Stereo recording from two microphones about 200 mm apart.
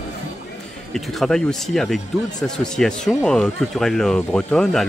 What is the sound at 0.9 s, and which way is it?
Speech, centre (ahead or behind).